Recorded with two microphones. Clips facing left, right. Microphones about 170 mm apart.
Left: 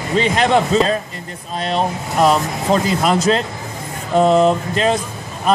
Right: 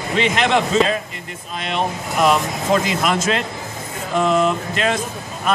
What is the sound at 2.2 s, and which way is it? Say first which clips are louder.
Speech: left 2 dB; 30° left (ahead or behind).